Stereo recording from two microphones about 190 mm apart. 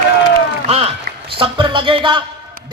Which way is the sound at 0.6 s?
30° right (ahead or behind).